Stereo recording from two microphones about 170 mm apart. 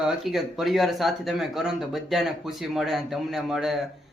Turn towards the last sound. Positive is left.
turn(degrees=0)  # may be behind; listen again after turning